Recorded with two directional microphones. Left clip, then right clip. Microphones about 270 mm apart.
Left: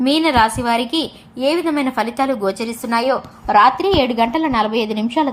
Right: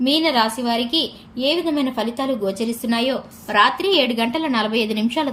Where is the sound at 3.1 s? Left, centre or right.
Centre.